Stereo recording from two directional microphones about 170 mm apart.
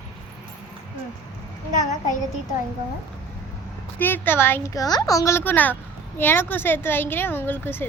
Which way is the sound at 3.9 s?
10° left (ahead or behind).